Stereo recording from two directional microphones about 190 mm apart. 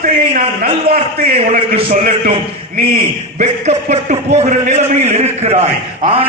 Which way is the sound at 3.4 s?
40° right (ahead or behind).